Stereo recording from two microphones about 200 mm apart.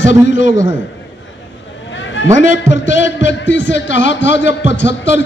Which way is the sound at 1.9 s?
65° left (ahead or behind).